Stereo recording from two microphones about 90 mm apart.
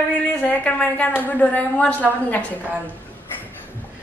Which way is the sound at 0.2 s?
15° left (ahead or behind).